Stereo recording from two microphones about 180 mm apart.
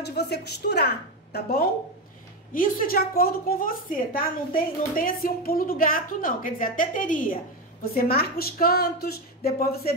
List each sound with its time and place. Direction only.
0.0 s a woman's voice: 65° left (ahead or behind)